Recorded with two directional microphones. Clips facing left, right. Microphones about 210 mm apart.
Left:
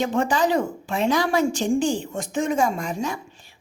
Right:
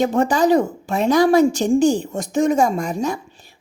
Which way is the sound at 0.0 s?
40° right (ahead or behind).